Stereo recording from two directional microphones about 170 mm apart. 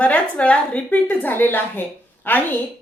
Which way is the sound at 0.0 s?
10° left (ahead or behind).